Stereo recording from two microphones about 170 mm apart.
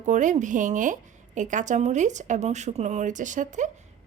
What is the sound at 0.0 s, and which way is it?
A woman's voice, 45° right (ahead or behind).